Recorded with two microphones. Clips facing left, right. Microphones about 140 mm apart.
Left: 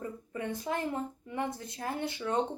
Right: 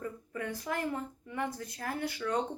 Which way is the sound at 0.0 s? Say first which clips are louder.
Left 1 dB; 25° left (ahead or behind).